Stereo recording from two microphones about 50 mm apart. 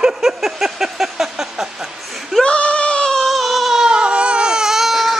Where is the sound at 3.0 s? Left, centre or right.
Centre.